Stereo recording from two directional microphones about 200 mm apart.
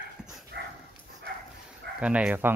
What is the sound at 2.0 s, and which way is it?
Speech, 5° right (ahead or behind).